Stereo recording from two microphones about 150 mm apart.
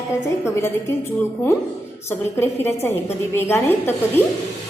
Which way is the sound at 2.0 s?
15° left (ahead or behind).